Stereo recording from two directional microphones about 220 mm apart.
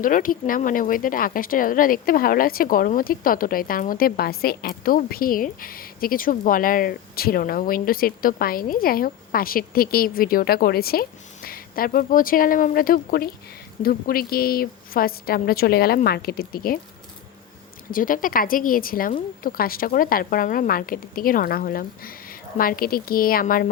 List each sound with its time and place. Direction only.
0.0 s a woman's voice: 40° left (ahead or behind)
17.9 s speech: 40° left (ahead or behind)